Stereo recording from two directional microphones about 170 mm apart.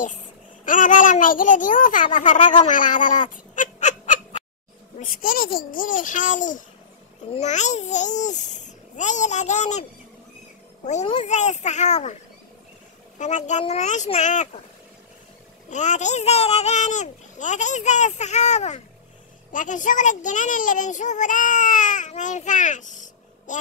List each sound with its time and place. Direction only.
0.7 s a child's voice: 50° left (ahead or behind)
11.2 s a child's voice: 45° left (ahead or behind)
13.2 s a child's voice: 45° left (ahead or behind)
15.7 s a child's voice: 45° left (ahead or behind)